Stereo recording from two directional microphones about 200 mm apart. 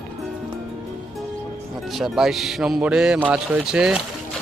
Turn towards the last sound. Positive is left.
turn(degrees=-5)  # may be behind; listen again after turning